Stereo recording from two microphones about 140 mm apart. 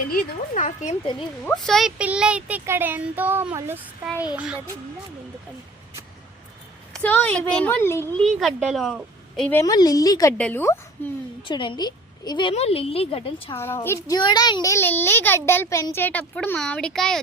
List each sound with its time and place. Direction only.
0.1 s speech: 60° left (ahead or behind)
1.6 s a woman's voice: centre (ahead or behind)
6.9 s a child's voice: 10° left (ahead or behind)
8.2 s a woman's voice: centre (ahead or behind)
9.5 s a child's voice: 20° left (ahead or behind)
10.3 s a child's voice: 15° left (ahead or behind)
11.4 s a woman's voice: 35° left (ahead or behind)
12.5 s a woman's voice: 45° left (ahead or behind)
13.6 s a woman's voice: 15° left (ahead or behind)